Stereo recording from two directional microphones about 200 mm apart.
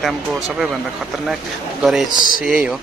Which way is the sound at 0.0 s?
Centre (ahead or behind).